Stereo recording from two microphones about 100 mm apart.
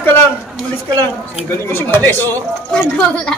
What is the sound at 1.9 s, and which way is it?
Speech, 20° left (ahead or behind).